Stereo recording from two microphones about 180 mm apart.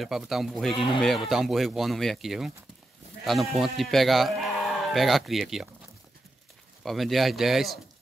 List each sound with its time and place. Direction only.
0.0 s speech: centre (ahead or behind)
0.7 s speech: 25° left (ahead or behind)
1.0 s speech: centre (ahead or behind)
6.8 s speech: centre (ahead or behind)